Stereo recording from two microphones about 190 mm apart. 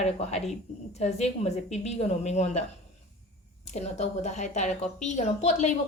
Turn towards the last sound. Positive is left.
turn(degrees=35)  # may be behind; listen again after turning